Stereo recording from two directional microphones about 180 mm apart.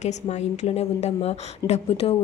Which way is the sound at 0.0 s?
40° left (ahead or behind).